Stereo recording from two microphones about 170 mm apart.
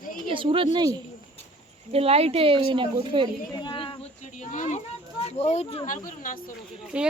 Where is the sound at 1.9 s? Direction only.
35° right (ahead or behind).